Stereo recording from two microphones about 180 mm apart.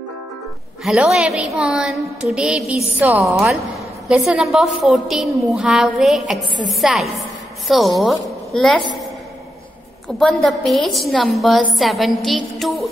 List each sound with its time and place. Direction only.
0.8 s a woman's voice: centre (ahead or behind)
10.0 s a woman's voice: centre (ahead or behind)